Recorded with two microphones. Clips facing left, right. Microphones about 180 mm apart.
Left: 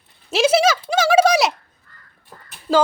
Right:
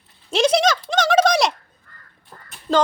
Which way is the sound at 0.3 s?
5° left (ahead or behind).